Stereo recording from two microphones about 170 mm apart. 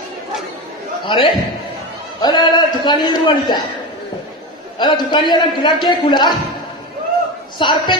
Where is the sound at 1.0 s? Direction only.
30° left (ahead or behind).